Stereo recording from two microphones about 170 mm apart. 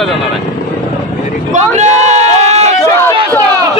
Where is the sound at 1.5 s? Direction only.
45° right (ahead or behind).